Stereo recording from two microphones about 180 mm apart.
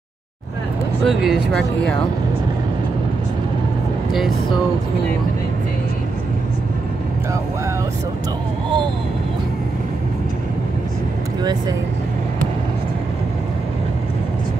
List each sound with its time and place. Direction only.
1.0 s speech: centre (ahead or behind)
4.1 s speech: centre (ahead or behind)